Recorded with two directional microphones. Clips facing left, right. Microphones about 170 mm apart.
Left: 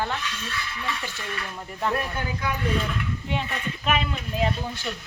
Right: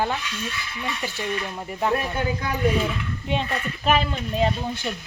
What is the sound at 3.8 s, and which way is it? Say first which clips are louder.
Speech: right 4 dB; 35° right (ahead or behind).